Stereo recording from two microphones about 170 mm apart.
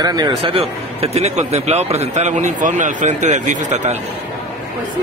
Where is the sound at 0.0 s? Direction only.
25° right (ahead or behind); by 4.0 s 40° right (ahead or behind).